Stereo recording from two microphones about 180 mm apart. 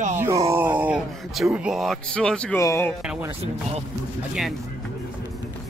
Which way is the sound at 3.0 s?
10° right (ahead or behind).